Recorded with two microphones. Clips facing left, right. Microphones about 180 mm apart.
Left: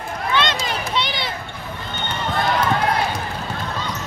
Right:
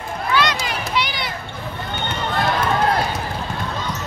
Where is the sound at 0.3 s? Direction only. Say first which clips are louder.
Right 1 dB; 25° left (ahead or behind).